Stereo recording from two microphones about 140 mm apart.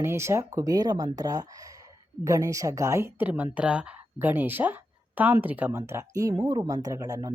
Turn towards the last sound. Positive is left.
turn(degrees=-25)  # may be behind; listen again after turning